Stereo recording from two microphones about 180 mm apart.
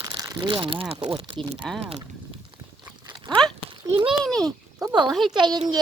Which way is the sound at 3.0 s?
25° right (ahead or behind).